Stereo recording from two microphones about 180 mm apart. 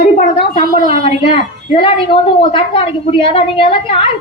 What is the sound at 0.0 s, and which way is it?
A woman's voice, 35° left (ahead or behind).